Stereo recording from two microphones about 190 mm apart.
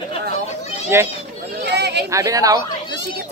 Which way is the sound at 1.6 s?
60° right (ahead or behind).